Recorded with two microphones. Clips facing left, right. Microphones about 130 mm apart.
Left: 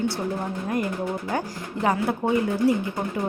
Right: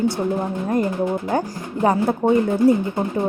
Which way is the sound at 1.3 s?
35° right (ahead or behind).